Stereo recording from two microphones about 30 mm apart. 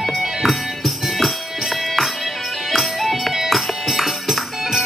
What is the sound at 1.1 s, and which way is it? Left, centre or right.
Music, centre.